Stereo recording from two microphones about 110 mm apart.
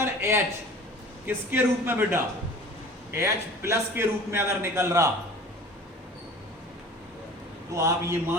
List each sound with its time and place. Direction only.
0.0 s a man's voice: 25° right (ahead or behind)
7.7 s a man's voice: 25° right (ahead or behind)